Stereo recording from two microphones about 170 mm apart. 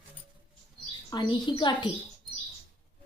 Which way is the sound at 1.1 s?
25° left (ahead or behind).